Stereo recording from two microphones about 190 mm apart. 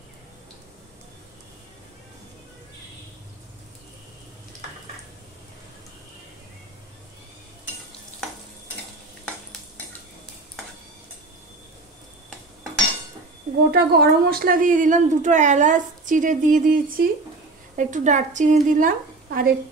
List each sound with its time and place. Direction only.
13.7 s a woman's voice: 55° right (ahead or behind)